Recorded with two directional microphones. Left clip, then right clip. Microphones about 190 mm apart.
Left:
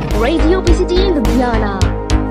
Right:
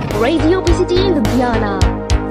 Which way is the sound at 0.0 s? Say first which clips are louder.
Even; centre (ahead or behind).